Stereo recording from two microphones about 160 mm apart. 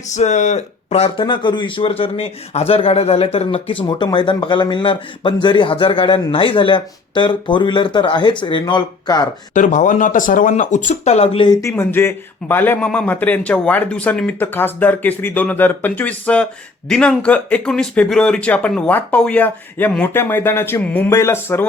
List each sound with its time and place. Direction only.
0.1 s speech: 45° left (ahead or behind); by 9.2 s 25° left (ahead or behind)
9.6 s speech: 50° left (ahead or behind); by 21.7 s 15° left (ahead or behind)